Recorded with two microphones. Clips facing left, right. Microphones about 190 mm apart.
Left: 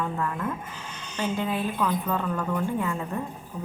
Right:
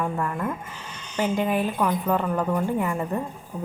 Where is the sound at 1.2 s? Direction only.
15° right (ahead or behind).